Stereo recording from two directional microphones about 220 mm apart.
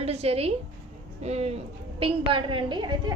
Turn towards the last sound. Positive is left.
turn(degrees=-20)  # may be behind; listen again after turning